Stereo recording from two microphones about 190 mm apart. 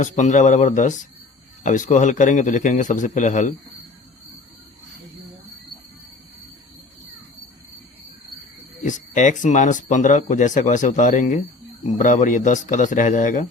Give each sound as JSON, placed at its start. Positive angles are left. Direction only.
{"t": 0.0, "sound": "speech", "side_deg": 40}
{"t": 8.8, "sound": "speech", "side_deg": 40}